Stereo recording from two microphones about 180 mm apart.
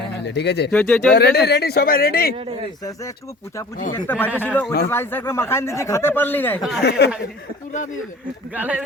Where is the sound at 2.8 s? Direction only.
20° left (ahead or behind).